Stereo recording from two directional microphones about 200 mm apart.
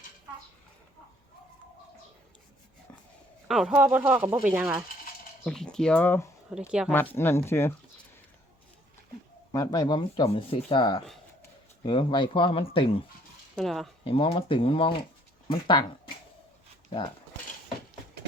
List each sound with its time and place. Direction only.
3.5 s speech: 5° right (ahead or behind)
6.5 s speech: 5° right (ahead or behind)
6.9 s speech: 10° left (ahead or behind)
9.5 s speech: 20° left (ahead or behind)
13.6 s speech: centre (ahead or behind)
14.0 s speech: 30° left (ahead or behind)